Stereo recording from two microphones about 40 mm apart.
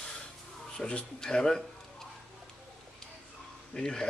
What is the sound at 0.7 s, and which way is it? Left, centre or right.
Speech, centre.